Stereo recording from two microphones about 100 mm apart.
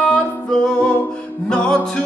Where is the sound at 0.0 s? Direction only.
10° left (ahead or behind).